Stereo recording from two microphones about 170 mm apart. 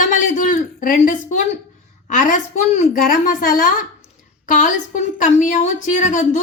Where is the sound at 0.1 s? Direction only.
45° left (ahead or behind).